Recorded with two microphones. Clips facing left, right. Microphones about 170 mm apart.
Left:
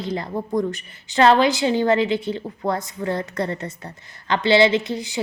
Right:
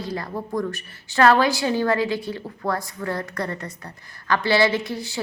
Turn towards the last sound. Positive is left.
turn(degrees=20)  # may be behind; listen again after turning